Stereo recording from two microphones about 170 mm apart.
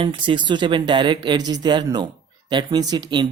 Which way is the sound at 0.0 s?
30° right (ahead or behind).